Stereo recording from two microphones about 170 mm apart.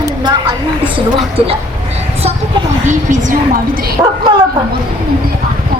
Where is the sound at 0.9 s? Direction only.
35° right (ahead or behind).